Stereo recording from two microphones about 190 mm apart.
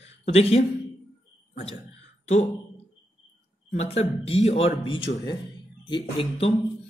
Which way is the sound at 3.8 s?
35° left (ahead or behind).